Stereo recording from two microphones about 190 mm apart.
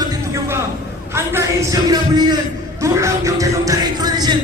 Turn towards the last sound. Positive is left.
turn(degrees=-20)  # may be behind; listen again after turning